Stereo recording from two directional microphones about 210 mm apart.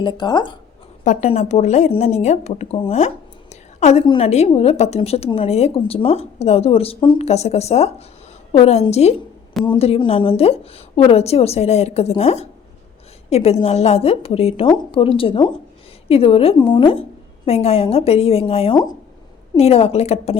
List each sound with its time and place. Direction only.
0.0 s a woman's voice: 20° left (ahead or behind)
1.0 s a woman's voice: 35° left (ahead or behind)
3.5 s a sound: 35° left (ahead or behind)
4.0 s a woman's voice: 25° left (ahead or behind)